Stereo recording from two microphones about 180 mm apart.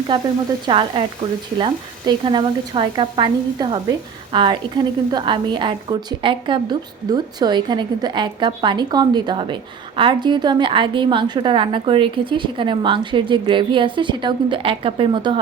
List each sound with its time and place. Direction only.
0.7 s a woman's voice: 30° right (ahead or behind)